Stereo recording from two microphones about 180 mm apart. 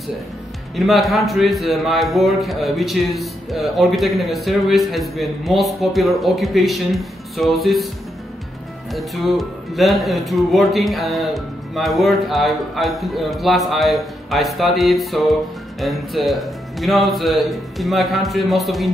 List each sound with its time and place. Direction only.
0.7 s a man's voice: centre (ahead or behind)
8.9 s a man's voice: centre (ahead or behind)